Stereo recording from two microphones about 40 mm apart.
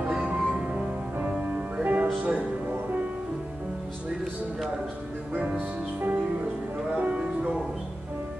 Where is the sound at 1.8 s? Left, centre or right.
Right.